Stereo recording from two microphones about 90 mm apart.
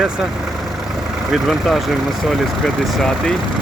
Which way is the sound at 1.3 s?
Centre (ahead or behind).